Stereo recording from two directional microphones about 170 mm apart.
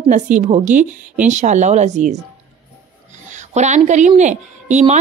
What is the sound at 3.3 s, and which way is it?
A woman's voice, 45° right (ahead or behind).